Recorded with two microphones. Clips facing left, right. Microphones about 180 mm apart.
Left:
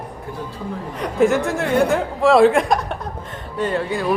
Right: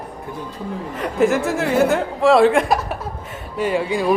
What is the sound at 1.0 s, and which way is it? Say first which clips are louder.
Speech: left 1 dB; centre (ahead or behind).